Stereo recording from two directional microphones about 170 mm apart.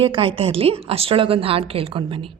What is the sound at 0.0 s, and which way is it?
A woman's voice, 30° right (ahead or behind).